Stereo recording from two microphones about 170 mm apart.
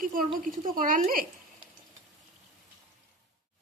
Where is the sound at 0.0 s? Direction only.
55° right (ahead or behind).